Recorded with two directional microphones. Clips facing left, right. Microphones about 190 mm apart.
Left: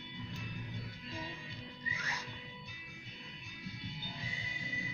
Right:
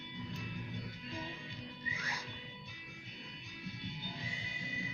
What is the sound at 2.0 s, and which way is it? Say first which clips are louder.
Music: left 1 dB; 10° right (ahead or behind).